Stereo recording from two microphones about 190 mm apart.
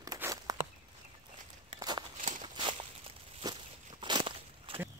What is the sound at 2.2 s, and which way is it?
Walk, 45° right (ahead or behind).